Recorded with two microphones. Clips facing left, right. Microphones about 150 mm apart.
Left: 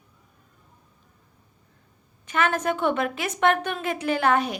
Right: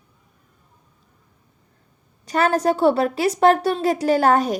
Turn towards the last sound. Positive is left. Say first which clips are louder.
# right 5 dB
turn(degrees=-40)  # may be behind; listen again after turning